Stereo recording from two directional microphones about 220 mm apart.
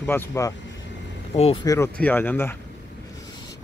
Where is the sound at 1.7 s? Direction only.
10° left (ahead or behind).